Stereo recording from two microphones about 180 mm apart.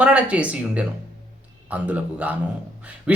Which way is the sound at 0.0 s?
5° right (ahead or behind).